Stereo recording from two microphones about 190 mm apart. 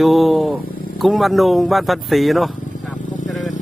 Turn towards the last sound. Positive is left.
turn(degrees=0)  # may be behind; listen again after turning